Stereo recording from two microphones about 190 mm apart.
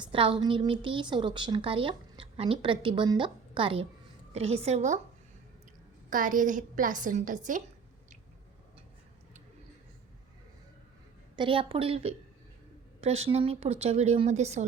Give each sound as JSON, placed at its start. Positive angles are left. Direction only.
{"t": 0.0, "sound": "a woman's voice", "side_deg": -25}
{"t": 6.1, "sound": "a woman's voice", "side_deg": -45}
{"t": 11.3, "sound": "a woman's voice", "side_deg": -25}